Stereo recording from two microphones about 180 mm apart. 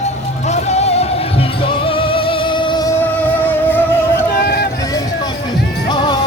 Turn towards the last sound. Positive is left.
turn(degrees=25)  # may be behind; listen again after turning